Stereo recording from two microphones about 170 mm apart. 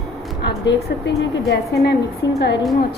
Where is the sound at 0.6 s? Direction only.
90° left.